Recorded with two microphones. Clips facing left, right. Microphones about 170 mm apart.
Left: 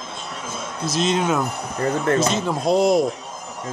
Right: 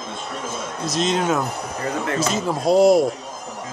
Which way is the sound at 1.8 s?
45° left (ahead or behind).